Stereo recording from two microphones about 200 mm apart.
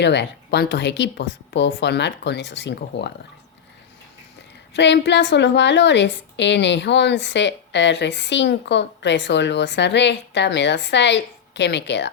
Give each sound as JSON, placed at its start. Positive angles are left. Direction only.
{"t": 0.0, "sound": "a woman's voice", "side_deg": 60}
{"t": 4.7, "sound": "a woman's voice", "side_deg": 60}